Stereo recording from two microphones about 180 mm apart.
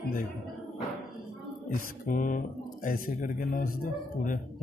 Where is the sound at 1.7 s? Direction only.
50° left (ahead or behind).